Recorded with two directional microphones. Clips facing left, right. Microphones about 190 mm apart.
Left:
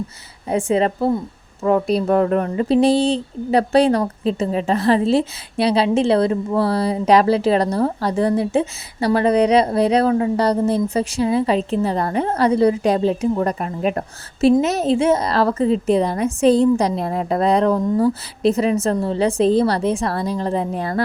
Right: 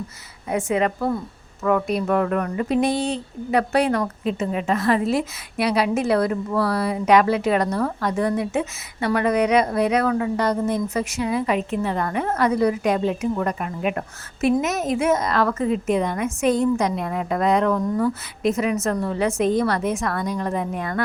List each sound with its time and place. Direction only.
0.4 s a woman's voice: 30° left (ahead or behind)